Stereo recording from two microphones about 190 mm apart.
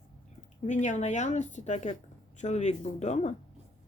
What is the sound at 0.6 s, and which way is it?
Speech, 40° left (ahead or behind).